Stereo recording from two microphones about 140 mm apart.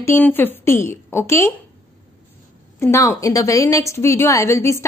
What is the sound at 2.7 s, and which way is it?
A woman's voice, 20° left (ahead or behind).